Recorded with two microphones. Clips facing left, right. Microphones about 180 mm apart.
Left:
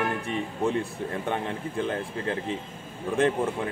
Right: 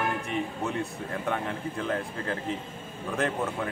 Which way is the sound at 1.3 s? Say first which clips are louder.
Left 1 dB; 25° left (ahead or behind).